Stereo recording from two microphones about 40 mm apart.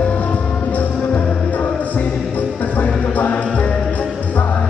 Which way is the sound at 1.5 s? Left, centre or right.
Left.